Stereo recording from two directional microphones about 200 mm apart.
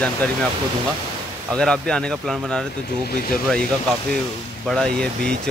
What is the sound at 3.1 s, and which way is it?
Speech, 50° left (ahead or behind).